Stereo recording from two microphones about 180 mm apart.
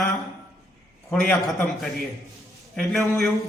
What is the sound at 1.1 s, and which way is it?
Speech, centre (ahead or behind).